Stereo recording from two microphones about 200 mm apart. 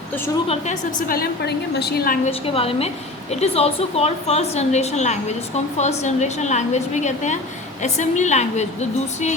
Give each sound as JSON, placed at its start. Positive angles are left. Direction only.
{"t": 0.4, "sound": "a woman's voice", "side_deg": 35}
{"t": 2.2, "sound": "a woman's voice", "side_deg": 30}